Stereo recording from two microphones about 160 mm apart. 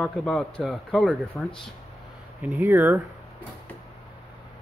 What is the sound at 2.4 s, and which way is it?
Speech, 10° right (ahead or behind).